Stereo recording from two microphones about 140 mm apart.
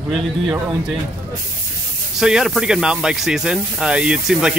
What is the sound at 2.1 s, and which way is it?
Speech, 5° right (ahead or behind).